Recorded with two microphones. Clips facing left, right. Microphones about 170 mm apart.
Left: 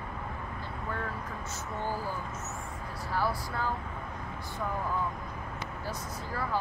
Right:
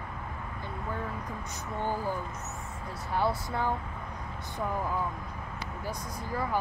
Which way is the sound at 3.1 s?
20° right (ahead or behind).